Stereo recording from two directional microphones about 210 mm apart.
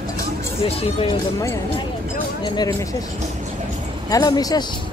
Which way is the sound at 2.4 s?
20° left (ahead or behind).